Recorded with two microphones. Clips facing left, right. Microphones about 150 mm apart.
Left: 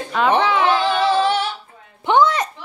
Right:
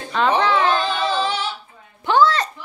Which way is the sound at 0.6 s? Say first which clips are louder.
Left 3 dB; 60° left (ahead or behind).